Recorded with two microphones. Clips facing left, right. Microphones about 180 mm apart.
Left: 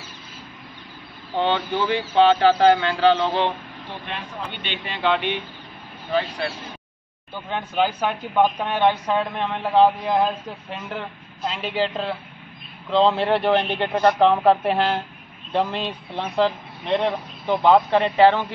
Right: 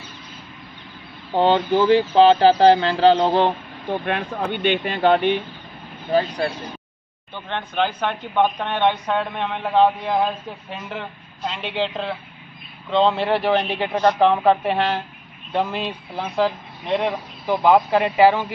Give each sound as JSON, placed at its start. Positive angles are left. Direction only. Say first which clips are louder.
{"t": 1.3, "sound": "speech", "louder": "right 5 dB", "side_deg": -40}
{"t": 6.4, "sound": "speech", "louder": "right 4 dB", "side_deg": -45}
{"t": 7.3, "sound": "speech", "louder": "left 1 dB", "side_deg": 5}